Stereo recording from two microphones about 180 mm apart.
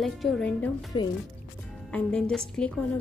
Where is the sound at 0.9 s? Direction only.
25° left (ahead or behind).